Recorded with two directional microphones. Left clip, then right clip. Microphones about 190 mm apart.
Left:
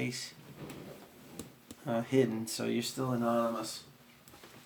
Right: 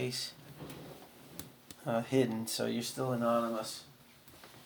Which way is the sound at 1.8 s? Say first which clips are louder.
Left 1 dB; 15° right (ahead or behind).